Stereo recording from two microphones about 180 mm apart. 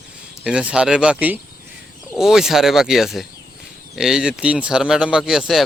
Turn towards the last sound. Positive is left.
turn(degrees=0)  # may be behind; listen again after turning